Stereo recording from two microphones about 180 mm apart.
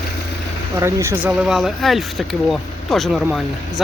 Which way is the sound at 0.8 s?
15° right (ahead or behind).